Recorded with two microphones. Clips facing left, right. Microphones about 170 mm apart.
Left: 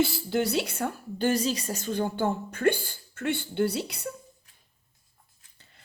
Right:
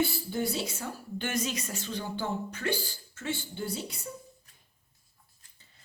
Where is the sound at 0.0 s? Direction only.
75° left (ahead or behind); by 0.9 s 60° left (ahead or behind).